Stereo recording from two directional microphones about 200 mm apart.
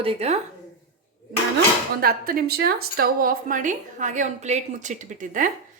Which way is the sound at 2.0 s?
50° right (ahead or behind).